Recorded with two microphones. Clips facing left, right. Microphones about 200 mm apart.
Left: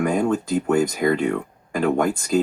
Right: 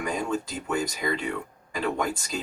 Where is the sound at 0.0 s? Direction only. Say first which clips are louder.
Left 8 dB; 55° left (ahead or behind).